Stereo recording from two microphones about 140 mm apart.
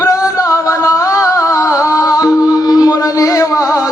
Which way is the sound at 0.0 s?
25° left (ahead or behind).